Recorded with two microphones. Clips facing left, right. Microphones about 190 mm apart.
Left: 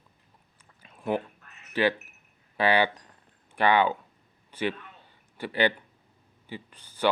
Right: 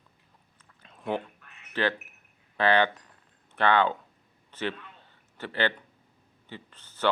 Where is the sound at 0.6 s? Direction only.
10° left (ahead or behind).